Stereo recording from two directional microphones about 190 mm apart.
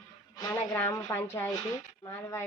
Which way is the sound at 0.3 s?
15° left (ahead or behind).